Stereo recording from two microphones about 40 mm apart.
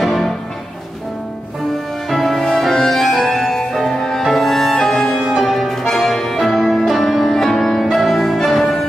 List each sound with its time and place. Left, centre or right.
0.0 s music: centre
2.0 s music: centre
5.3 s music: centre